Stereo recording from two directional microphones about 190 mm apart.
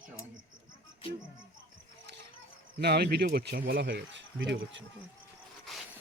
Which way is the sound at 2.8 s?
60° right (ahead or behind).